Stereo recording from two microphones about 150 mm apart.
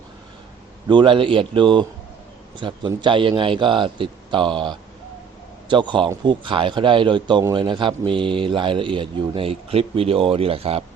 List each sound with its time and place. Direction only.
0.9 s a man's voice: 30° right (ahead or behind)